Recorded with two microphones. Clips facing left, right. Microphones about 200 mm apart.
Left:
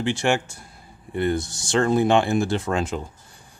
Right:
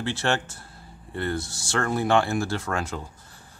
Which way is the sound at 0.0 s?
15° left (ahead or behind).